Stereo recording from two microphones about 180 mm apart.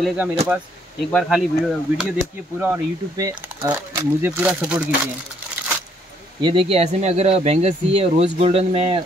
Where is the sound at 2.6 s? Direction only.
15° right (ahead or behind).